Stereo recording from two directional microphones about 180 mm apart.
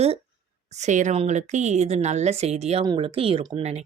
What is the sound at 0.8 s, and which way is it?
Speech, 45° right (ahead or behind).